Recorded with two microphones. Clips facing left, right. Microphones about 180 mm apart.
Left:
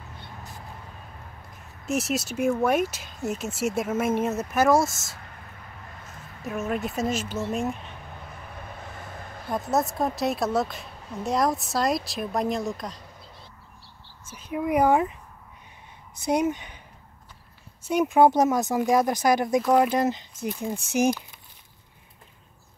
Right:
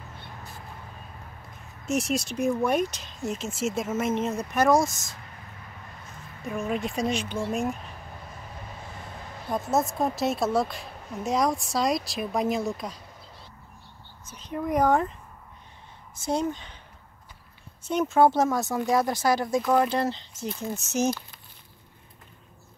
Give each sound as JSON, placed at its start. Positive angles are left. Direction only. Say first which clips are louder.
{"t": 1.9, "sound": "a woman's voice", "louder": "even", "side_deg": 0}
{"t": 6.4, "sound": "a woman's voice", "louder": "left 1 dB", "side_deg": 5}
{"t": 9.5, "sound": "a woman's voice", "louder": "even", "side_deg": 0}
{"t": 14.3, "sound": "speech", "louder": "left 2 dB", "side_deg": 10}
{"t": 16.3, "sound": "speech", "louder": "left 3 dB", "side_deg": 15}
{"t": 17.8, "sound": "speech", "louder": "left 2 dB", "side_deg": 10}